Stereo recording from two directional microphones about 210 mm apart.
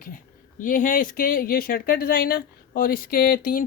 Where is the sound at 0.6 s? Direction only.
40° left (ahead or behind).